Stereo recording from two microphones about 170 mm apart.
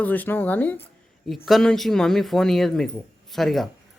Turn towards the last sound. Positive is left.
turn(degrees=0)  # may be behind; listen again after turning